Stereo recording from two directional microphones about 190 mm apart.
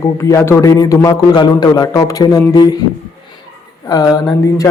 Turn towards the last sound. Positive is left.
turn(degrees=20)  # may be behind; listen again after turning